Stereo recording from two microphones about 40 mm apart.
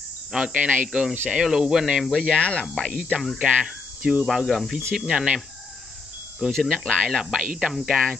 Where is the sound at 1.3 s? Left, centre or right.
Centre.